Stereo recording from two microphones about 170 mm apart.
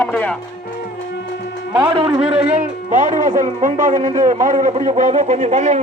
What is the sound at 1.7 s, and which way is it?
Speech, 30° right (ahead or behind).